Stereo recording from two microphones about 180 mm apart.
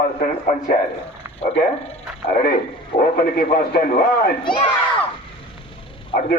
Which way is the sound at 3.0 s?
55° left (ahead or behind).